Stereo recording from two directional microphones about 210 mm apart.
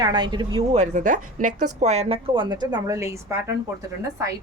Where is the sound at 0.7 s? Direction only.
35° right (ahead or behind); by 4.3 s 15° right (ahead or behind).